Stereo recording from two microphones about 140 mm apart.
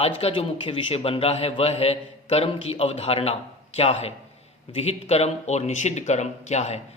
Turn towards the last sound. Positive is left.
turn(degrees=55)  # may be behind; listen again after turning